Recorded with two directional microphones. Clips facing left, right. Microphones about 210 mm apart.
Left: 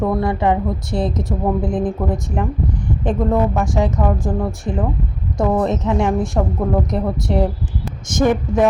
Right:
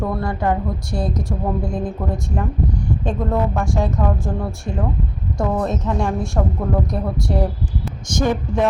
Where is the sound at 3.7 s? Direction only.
20° left (ahead or behind).